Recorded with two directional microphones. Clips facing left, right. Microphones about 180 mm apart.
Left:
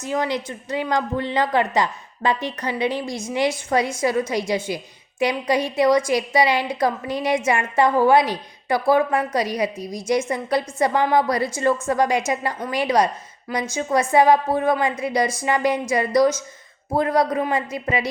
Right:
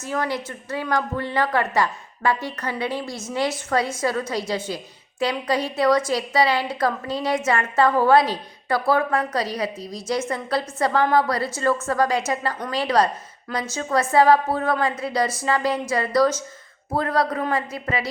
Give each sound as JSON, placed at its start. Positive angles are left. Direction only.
{"t": 0.0, "sound": "a woman's voice", "side_deg": 20}